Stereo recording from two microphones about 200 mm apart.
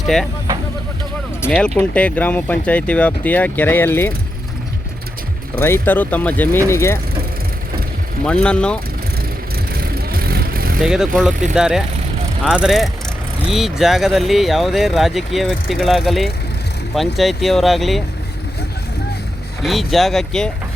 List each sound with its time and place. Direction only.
0.0 s speech: centre (ahead or behind)
1.5 s speech: 5° left (ahead or behind)
5.5 s speech: 10° left (ahead or behind)
8.3 s speech: 5° left (ahead or behind)
9.7 s vehicle: 50° right (ahead or behind)
10.8 s speech: centre (ahead or behind)
19.6 s speech: centre (ahead or behind)